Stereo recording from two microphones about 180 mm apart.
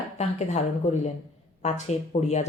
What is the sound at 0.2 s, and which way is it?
Speech, 40° left (ahead or behind).